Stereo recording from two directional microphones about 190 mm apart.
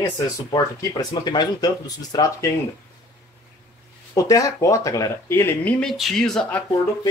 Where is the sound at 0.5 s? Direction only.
20° left (ahead or behind).